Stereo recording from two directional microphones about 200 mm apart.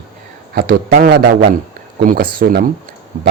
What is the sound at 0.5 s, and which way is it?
Speech, 45° right (ahead or behind).